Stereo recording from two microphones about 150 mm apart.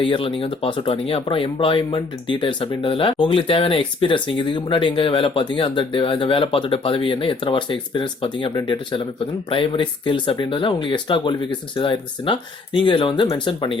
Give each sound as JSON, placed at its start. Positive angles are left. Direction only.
{"t": 0.0, "sound": "speech", "side_deg": 35}